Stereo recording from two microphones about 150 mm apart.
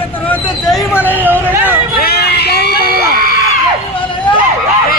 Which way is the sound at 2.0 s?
90° left.